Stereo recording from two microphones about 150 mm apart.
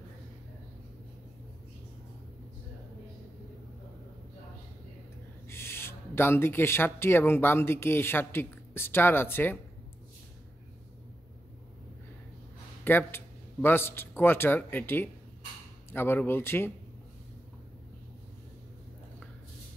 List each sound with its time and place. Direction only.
5.5 s speech: 15° left (ahead or behind)
12.8 s speech: 15° left (ahead or behind)